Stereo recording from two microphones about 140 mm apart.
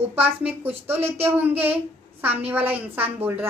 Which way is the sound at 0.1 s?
10° right (ahead or behind).